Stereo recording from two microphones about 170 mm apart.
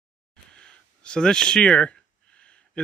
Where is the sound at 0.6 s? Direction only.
5° left (ahead or behind).